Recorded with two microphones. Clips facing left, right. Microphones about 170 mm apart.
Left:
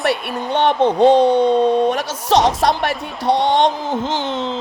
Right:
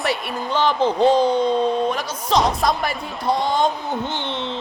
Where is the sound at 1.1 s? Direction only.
70° left (ahead or behind); by 4.3 s 90° left.